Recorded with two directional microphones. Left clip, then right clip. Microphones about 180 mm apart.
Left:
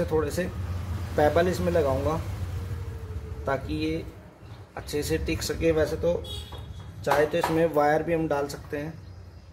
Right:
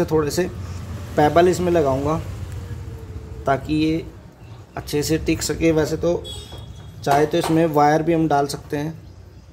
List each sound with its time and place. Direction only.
0.0 s speech: 35° right (ahead or behind)
3.4 s speech: 35° right (ahead or behind)